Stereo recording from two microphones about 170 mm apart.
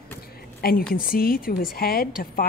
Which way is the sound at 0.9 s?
60° left (ahead or behind).